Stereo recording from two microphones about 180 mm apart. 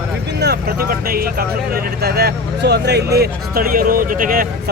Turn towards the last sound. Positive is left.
turn(degrees=-50)  # may be behind; listen again after turning